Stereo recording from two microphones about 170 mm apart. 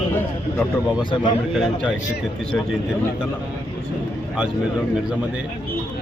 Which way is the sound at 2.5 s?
10° left (ahead or behind).